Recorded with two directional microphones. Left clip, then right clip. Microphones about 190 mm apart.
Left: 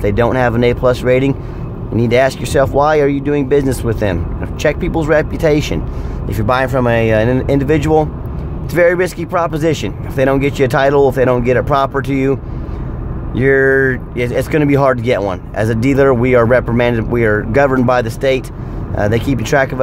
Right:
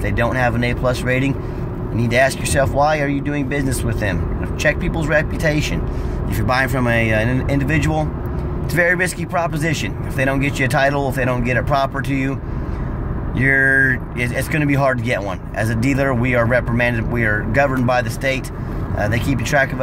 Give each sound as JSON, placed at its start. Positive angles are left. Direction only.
{"t": 0.0, "sound": "speech", "side_deg": 40}